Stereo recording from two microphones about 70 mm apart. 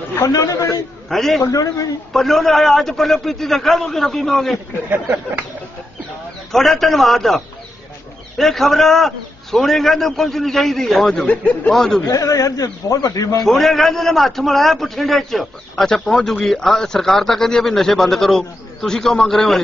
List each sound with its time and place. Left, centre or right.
0.3 s a man's voice: left
1.0 s a man's voice: centre
1.4 s speech: left
2.1 s a man's voice: centre
4.8 s speech: right
6.5 s a man's voice: centre
11.1 s speech: left
11.7 s a man's voice: centre
12.1 s speech: left
13.5 s a man's voice: centre